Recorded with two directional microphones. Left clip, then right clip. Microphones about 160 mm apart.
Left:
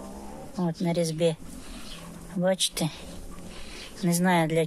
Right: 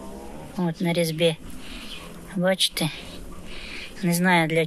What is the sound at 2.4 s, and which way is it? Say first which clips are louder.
Speech: right 4 dB; 10° left (ahead or behind).